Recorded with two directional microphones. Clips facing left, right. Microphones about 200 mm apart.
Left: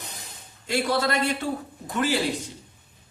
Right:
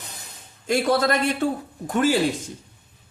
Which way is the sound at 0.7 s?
50° right (ahead or behind).